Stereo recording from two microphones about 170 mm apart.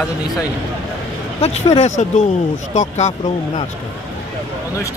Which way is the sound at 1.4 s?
40° left (ahead or behind).